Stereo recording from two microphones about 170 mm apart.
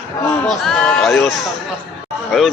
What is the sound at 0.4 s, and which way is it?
Speech, centre (ahead or behind).